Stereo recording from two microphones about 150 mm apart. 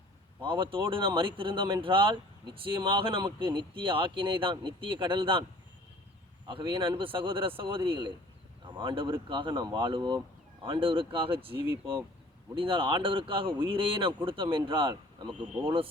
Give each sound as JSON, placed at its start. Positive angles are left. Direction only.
{"t": 0.4, "sound": "speech", "side_deg": -35}
{"t": 6.5, "sound": "speech", "side_deg": -35}